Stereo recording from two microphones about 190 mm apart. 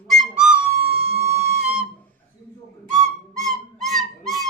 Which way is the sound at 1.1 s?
35° right (ahead or behind).